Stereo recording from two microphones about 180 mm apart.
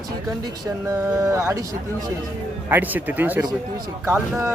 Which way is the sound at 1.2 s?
15° right (ahead or behind).